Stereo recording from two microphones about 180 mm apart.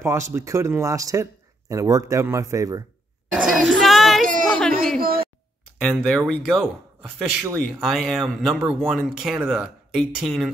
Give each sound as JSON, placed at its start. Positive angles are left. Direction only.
{"t": 0.0, "sound": "speech", "side_deg": -15}
{"t": 3.3, "sound": "speech", "side_deg": 0}
{"t": 3.8, "sound": "female singing", "side_deg": 0}
{"t": 4.5, "sound": "speech", "side_deg": 5}
{"t": 5.0, "sound": "speech", "side_deg": -55}
{"t": 5.8, "sound": "speech", "side_deg": 5}